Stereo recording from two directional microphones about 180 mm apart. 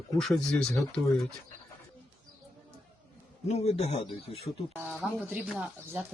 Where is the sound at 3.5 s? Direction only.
35° left (ahead or behind).